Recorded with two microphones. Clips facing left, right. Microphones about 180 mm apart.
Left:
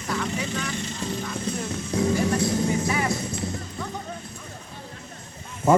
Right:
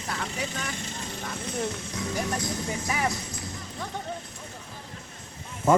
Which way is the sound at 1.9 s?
30° left (ahead or behind).